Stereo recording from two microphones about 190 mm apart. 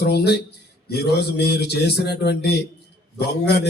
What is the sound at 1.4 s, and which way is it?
Speech, 55° left (ahead or behind).